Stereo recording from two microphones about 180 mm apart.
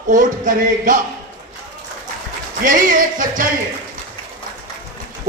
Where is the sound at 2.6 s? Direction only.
45° right (ahead or behind).